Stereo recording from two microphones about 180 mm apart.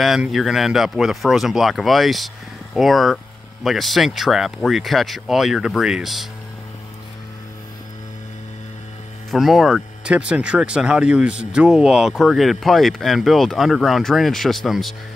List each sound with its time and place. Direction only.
0.0 s speech: centre (ahead or behind)
9.3 s speech: centre (ahead or behind)